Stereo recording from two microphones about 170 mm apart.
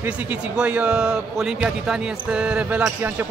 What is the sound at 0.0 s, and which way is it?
A man's voice, 10° right (ahead or behind).